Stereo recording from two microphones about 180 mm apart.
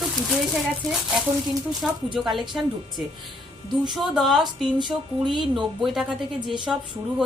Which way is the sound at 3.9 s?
Centre (ahead or behind).